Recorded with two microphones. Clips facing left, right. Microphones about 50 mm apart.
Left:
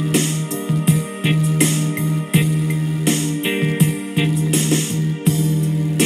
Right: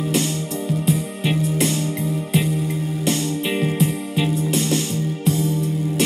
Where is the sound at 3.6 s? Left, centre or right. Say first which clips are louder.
Left 2 dB; left.